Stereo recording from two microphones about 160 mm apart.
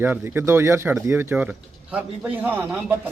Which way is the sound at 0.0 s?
15° right (ahead or behind).